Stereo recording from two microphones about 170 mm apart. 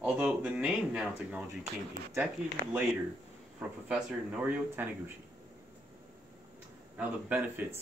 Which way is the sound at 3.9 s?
5° right (ahead or behind).